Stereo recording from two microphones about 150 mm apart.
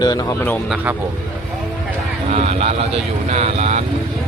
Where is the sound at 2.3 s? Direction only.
40° right (ahead or behind).